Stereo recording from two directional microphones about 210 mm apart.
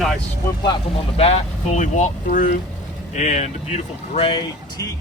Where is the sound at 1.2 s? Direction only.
30° left (ahead or behind).